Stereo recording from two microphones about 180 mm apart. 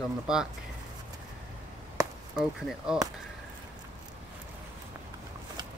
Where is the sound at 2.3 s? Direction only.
5° right (ahead or behind).